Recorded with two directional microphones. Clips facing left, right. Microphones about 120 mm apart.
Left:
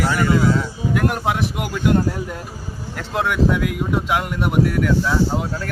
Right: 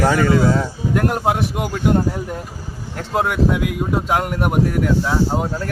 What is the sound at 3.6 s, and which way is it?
Speech, 20° right (ahead or behind).